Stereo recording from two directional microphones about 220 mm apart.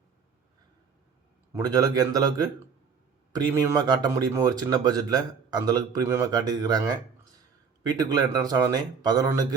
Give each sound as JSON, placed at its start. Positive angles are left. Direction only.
{"t": 1.5, "sound": "speech", "side_deg": -15}
{"t": 7.9, "sound": "speech", "side_deg": -15}